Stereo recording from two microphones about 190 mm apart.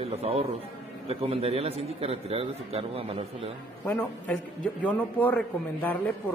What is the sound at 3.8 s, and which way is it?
A man's voice, 5° left (ahead or behind).